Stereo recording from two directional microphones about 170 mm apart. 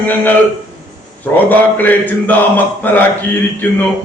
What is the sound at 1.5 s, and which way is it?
Mantra, 10° left (ahead or behind).